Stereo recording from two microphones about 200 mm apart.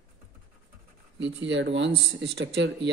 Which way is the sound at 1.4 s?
65° right (ahead or behind).